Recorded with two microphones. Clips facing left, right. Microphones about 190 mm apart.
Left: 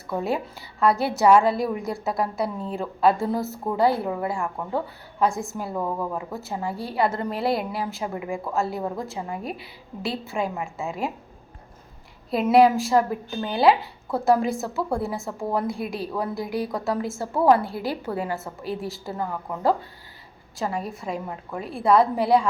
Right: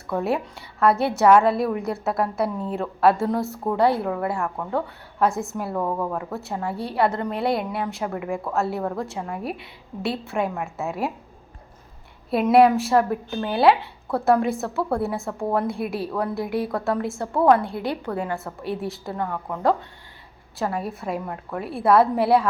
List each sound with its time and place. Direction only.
0.5 s speech: centre (ahead or behind)
4.0 s speech: 20° left (ahead or behind)
5.2 s speech: centre (ahead or behind)
12.3 s speech: centre (ahead or behind)